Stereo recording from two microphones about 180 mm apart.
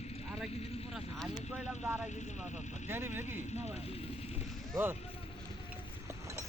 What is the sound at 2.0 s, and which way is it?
Speech, 40° left (ahead or behind).